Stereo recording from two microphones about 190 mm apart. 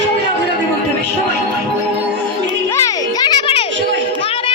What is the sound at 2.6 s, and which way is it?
Music, 15° left (ahead or behind).